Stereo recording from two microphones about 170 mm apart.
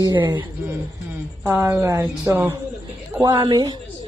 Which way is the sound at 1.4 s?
15° right (ahead or behind).